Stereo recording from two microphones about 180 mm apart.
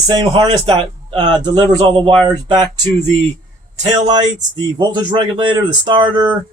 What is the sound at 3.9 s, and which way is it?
A man's voice, 25° right (ahead or behind).